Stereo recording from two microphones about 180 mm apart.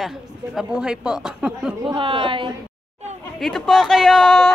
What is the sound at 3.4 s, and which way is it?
A woman's voice, centre (ahead or behind).